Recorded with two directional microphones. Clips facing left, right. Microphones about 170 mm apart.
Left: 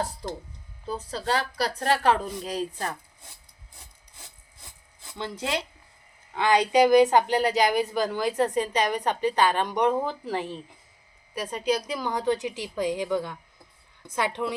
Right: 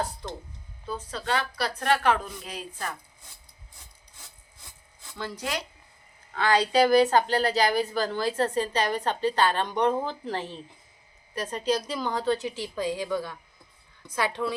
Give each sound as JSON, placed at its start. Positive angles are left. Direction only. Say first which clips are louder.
{"t": 0.9, "sound": "speech", "louder": "left 2 dB", "side_deg": 35}
{"t": 5.1, "sound": "speech", "louder": "left 3 dB", "side_deg": 20}